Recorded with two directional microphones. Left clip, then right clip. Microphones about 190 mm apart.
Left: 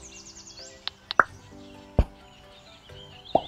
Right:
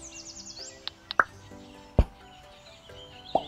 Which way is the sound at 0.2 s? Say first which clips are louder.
Right 2 dB; 45° right (ahead or behind).